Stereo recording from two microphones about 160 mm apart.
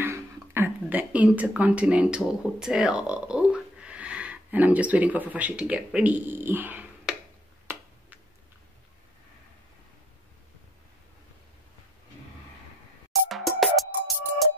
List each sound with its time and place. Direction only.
0.0 s a woman's voice: 15° right (ahead or behind)
7.7 s finger snapping: 15° right (ahead or behind)
13.3 s music: centre (ahead or behind)